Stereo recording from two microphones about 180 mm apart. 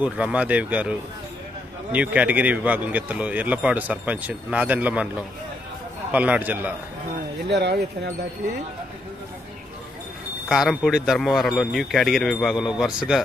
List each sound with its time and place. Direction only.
0.0 s a man's voice: 5° right (ahead or behind)
6.1 s a man's voice: 10° right (ahead or behind)
7.4 s speech: 70° right (ahead or behind)
10.5 s speech: centre (ahead or behind)